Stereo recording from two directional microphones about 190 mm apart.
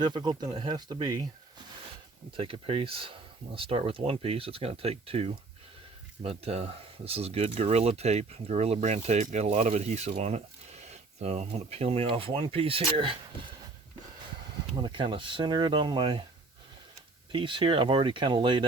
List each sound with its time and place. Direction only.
0.0 s speech: 25° right (ahead or behind)
2.3 s speech: 30° right (ahead or behind)
14.8 s speech: 25° right (ahead or behind)
17.3 s speech: 25° right (ahead or behind)